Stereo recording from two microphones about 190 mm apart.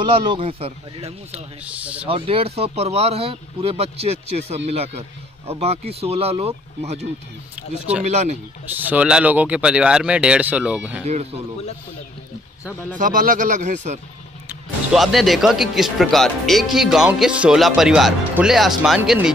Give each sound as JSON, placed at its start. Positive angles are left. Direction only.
{"t": 0.0, "sound": "speech", "side_deg": -25}
{"t": 1.6, "sound": "speech", "side_deg": -5}
{"t": 2.0, "sound": "speech", "side_deg": -30}
{"t": 8.7, "sound": "speech", "side_deg": -10}
{"t": 12.9, "sound": "speech", "side_deg": -45}
{"t": 14.5, "sound": "speech", "side_deg": 0}